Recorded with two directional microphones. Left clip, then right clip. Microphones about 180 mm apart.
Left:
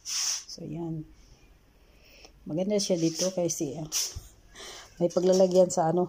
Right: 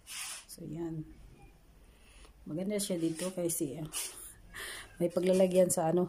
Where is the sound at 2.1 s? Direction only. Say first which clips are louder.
Left 8 dB; 10° left (ahead or behind).